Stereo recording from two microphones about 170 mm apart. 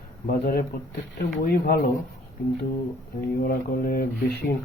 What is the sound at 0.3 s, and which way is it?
Speech, 60° left (ahead or behind).